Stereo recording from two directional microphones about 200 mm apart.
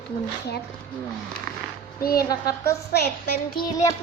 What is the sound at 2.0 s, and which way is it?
A child's voice, 50° left (ahead or behind).